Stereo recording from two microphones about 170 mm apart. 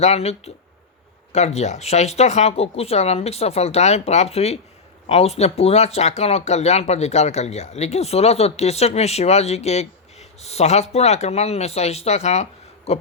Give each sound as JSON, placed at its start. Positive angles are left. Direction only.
{"t": 0.0, "sound": "speech", "side_deg": 40}